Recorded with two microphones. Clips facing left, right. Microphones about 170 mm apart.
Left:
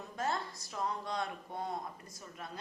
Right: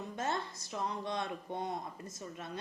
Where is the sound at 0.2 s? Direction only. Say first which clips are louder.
Left 1 dB; 25° right (ahead or behind).